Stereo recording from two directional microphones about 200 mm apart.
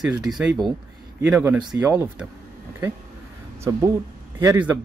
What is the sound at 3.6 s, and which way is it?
Speech, 15° right (ahead or behind).